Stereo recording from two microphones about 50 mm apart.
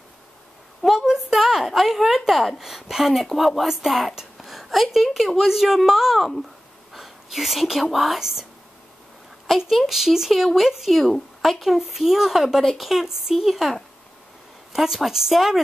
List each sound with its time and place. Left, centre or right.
0.8 s a woman's voice: centre
9.7 s speech: centre